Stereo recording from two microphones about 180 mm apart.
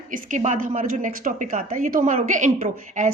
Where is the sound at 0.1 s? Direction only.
45° right (ahead or behind).